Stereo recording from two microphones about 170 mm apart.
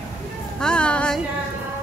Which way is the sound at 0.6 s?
5° left (ahead or behind).